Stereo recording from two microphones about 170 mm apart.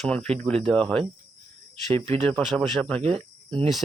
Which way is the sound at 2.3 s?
5° left (ahead or behind).